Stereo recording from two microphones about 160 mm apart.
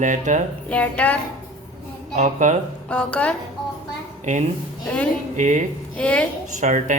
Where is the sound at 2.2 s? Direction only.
50° right (ahead or behind).